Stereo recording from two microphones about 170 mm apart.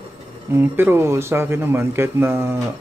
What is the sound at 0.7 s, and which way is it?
Speech, 15° right (ahead or behind).